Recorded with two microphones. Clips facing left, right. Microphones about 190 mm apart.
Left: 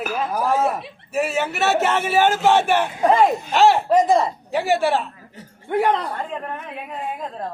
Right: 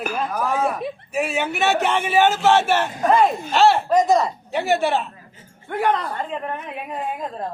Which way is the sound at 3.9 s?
30° left (ahead or behind).